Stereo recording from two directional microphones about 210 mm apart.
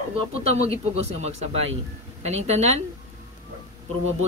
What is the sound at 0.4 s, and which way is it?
Speech, 30° right (ahead or behind).